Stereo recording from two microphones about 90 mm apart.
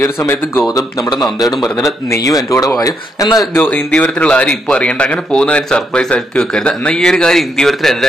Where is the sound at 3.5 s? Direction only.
20° left (ahead or behind).